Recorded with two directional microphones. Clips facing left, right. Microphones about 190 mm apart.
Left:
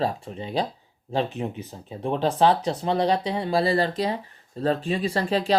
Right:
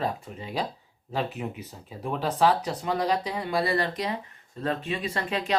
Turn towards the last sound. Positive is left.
turn(degrees=35)  # may be behind; listen again after turning